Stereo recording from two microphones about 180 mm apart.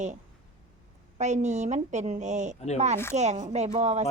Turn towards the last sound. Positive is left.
turn(degrees=-40)  # may be behind; listen again after turning